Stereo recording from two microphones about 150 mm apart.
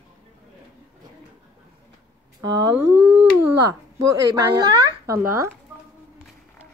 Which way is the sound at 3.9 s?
20° right (ahead or behind).